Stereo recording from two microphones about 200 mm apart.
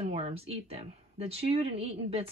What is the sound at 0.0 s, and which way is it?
Speech, 30° right (ahead or behind).